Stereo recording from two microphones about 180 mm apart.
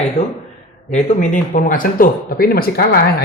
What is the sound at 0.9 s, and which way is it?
Speech, 40° left (ahead or behind).